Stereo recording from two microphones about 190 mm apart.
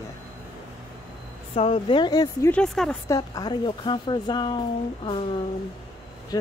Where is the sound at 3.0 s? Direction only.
20° left (ahead or behind).